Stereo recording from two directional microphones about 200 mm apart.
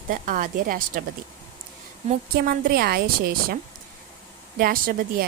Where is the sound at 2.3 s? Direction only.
45° right (ahead or behind).